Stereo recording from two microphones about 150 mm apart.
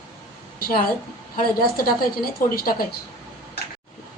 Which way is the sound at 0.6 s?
80° left.